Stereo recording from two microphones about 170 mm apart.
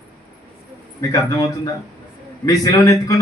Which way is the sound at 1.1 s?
20° left (ahead or behind).